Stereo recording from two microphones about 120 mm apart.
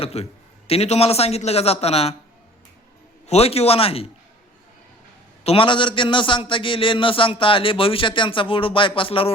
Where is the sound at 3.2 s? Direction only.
60° left (ahead or behind).